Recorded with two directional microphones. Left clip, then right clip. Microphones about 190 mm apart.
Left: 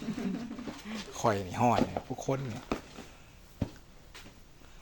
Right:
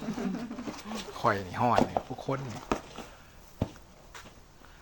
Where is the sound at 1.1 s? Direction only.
20° left (ahead or behind).